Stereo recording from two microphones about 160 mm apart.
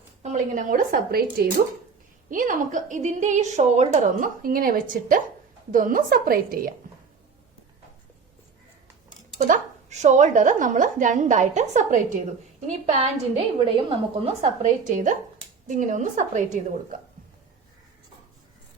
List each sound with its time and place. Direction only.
0.2 s speech: 50° right (ahead or behind); by 1.5 s 70° right (ahead or behind)
2.3 s a woman's voice: 55° right (ahead or behind)
9.4 s a woman's voice: 45° right (ahead or behind)
14.6 s a woman's voice: 55° right (ahead or behind)